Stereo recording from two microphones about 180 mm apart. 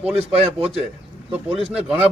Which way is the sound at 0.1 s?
35° right (ahead or behind).